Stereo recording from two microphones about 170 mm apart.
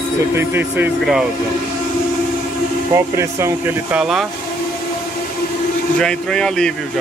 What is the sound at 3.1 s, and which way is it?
Speech, 15° right (ahead or behind).